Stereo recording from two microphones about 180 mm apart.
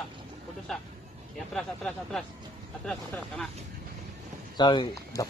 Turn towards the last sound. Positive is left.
turn(degrees=20)  # may be behind; listen again after turning